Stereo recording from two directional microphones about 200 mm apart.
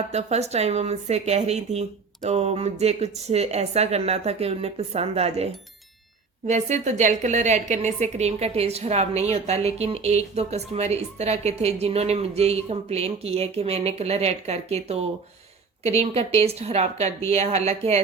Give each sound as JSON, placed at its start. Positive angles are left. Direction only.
{"t": 0.1, "sound": "a woman's voice", "side_deg": -35}
{"t": 6.5, "sound": "a woman's voice", "side_deg": -35}